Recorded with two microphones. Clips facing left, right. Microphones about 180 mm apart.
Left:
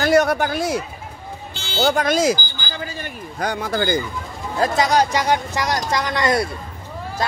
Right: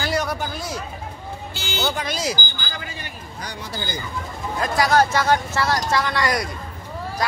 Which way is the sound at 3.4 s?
55° left (ahead or behind).